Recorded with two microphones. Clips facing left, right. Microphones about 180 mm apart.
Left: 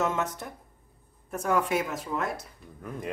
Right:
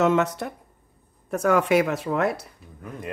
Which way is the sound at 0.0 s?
70° right (ahead or behind).